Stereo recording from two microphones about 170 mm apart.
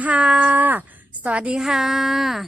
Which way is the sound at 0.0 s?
5° right (ahead or behind).